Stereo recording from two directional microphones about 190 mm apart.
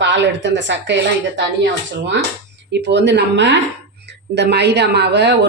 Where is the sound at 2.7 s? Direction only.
65° right (ahead or behind).